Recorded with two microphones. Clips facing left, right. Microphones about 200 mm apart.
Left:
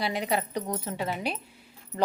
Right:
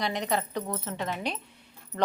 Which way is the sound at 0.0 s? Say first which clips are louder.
Left 1 dB; 10° left (ahead or behind).